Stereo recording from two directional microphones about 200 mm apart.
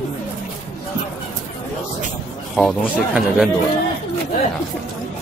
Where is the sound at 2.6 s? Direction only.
Centre (ahead or behind).